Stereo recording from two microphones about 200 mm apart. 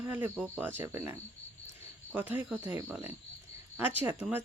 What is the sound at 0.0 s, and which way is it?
Speech, 10° right (ahead or behind).